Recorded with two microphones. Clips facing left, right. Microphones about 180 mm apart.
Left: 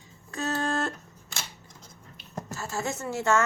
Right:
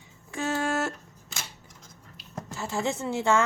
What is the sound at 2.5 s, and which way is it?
Speech, 15° right (ahead or behind).